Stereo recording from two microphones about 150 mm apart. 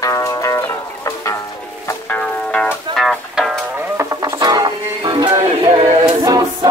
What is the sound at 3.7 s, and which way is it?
Music, 20° right (ahead or behind).